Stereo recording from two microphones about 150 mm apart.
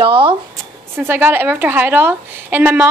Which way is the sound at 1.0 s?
15° right (ahead or behind).